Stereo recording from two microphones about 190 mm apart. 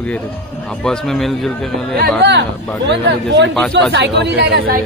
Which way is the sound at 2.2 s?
65° right (ahead or behind).